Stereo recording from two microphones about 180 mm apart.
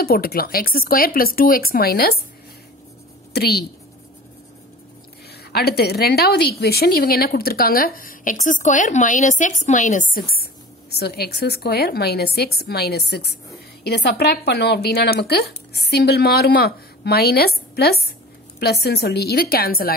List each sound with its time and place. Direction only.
0.0 s speech: 55° left (ahead or behind)
3.3 s speech: 65° left (ahead or behind)
5.4 s a woman's voice: 60° left (ahead or behind); by 10.0 s 45° left (ahead or behind)
10.1 s speech: 55° left (ahead or behind)